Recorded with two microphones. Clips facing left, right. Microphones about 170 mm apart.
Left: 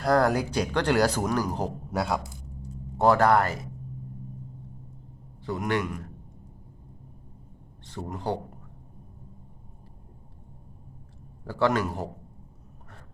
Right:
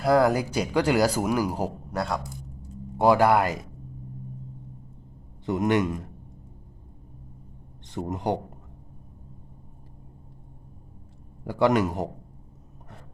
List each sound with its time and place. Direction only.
0.0 s speech: 5° right (ahead or behind)
1.9 s a man's voice: 5° left (ahead or behind)
2.6 s a sound: 10° right (ahead or behind)
5.5 s a man's voice: 20° right (ahead or behind)
7.9 s a man's voice: 20° right (ahead or behind)
11.4 s speech: 15° right (ahead or behind)